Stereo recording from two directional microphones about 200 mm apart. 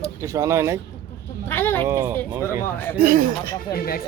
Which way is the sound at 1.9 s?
15° right (ahead or behind).